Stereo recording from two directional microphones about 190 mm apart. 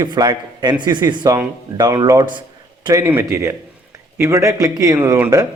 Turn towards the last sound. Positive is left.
turn(degrees=-15)  # may be behind; listen again after turning